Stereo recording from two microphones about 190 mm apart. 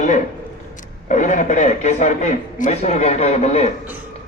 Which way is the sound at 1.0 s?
40° left (ahead or behind).